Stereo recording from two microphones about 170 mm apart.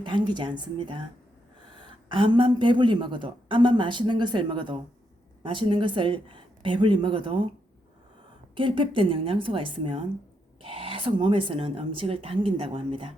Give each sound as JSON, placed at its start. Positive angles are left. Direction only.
{"t": 0.0, "sound": "a woman's voice", "side_deg": -25}
{"t": 8.5, "sound": "a woman's voice", "side_deg": -30}